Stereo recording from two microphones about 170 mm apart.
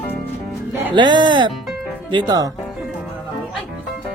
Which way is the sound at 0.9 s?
25° right (ahead or behind).